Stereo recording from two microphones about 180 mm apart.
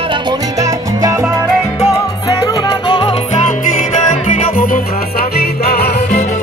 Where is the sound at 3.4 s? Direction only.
40° left (ahead or behind).